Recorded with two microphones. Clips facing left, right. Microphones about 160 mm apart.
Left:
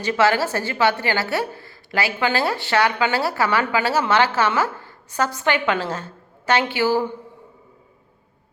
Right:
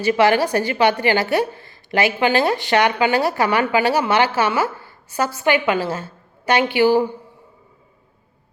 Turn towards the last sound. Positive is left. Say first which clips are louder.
# right 4 dB
turn(degrees=-15)  # may be behind; listen again after turning